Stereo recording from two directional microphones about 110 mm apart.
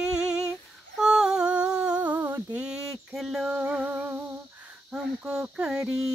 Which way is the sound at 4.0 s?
20° right (ahead or behind).